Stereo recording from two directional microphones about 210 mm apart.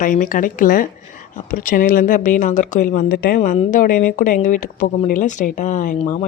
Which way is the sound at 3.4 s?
35° left (ahead or behind).